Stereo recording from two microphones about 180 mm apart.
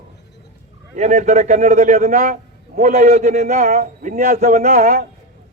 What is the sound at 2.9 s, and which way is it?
Speech, 40° right (ahead or behind).